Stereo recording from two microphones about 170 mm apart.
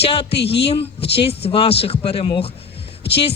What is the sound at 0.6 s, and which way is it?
A man's voice, 35° left (ahead or behind).